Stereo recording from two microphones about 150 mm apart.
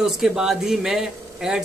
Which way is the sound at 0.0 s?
5° right (ahead or behind).